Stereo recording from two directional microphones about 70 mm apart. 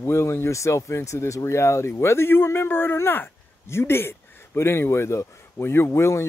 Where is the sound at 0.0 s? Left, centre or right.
Left.